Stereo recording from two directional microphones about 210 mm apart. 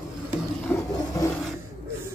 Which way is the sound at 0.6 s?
15° left (ahead or behind).